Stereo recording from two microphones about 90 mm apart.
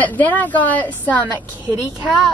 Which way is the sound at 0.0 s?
20° left (ahead or behind).